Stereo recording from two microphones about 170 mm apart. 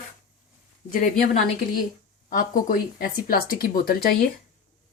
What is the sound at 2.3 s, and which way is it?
Speech, 55° left (ahead or behind).